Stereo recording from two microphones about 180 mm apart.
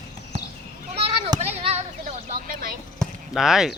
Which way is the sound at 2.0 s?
50° right (ahead or behind).